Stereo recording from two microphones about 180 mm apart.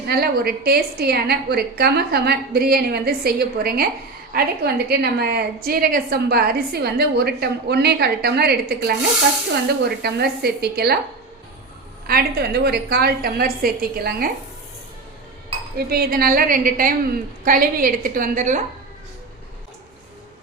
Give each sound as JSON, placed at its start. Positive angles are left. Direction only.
{"t": 0.0, "sound": "a woman's voice", "side_deg": -60}
{"t": 12.0, "sound": "a woman's voice", "side_deg": -60}
{"t": 15.9, "sound": "a woman's voice", "side_deg": -55}